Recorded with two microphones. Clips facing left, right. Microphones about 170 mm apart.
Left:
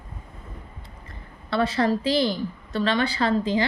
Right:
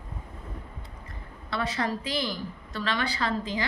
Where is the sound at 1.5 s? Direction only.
30° left (ahead or behind).